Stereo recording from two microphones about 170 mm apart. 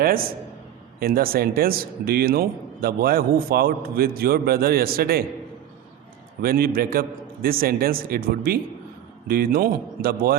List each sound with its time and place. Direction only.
0.0 s speech: 60° right (ahead or behind)
6.4 s speech: 60° right (ahead or behind)